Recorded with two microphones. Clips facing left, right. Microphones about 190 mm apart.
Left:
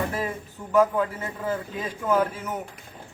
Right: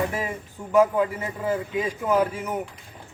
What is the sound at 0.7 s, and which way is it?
A man's voice, 10° right (ahead or behind).